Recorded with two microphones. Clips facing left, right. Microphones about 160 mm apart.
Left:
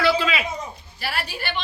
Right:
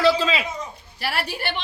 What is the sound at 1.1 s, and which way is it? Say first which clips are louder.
Speech: right 2 dB; 70° right (ahead or behind).